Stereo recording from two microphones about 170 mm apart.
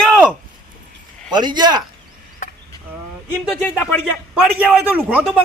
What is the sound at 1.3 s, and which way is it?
Speech, 25° right (ahead or behind).